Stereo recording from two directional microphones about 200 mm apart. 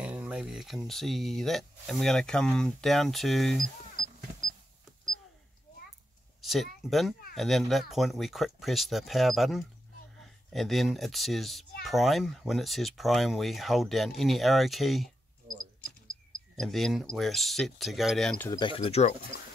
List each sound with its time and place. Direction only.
0.0 s speech: 5° right (ahead or behind)
6.4 s speech: centre (ahead or behind)
16.5 s speech: centre (ahead or behind)
18.5 s speech: 25° left (ahead or behind)